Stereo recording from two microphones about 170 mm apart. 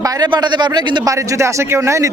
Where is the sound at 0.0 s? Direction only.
25° right (ahead or behind).